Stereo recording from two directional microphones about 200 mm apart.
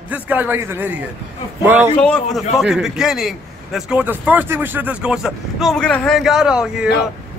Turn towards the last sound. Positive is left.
turn(degrees=-5)  # may be behind; listen again after turning